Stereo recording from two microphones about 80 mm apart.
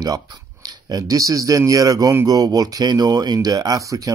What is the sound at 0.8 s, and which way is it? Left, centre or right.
Speech, right.